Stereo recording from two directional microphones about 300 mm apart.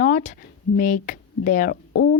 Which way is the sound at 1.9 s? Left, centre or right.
Left.